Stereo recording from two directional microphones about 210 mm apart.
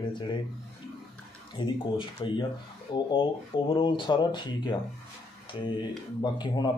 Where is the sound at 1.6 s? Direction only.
25° left (ahead or behind).